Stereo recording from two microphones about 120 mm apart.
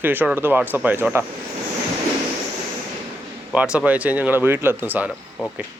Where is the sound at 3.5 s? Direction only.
10° right (ahead or behind).